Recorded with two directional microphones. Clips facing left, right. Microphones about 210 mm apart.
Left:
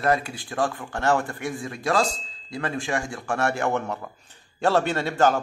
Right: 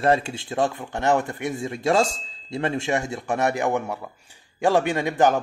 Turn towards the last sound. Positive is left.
turn(degrees=-20)  # may be behind; listen again after turning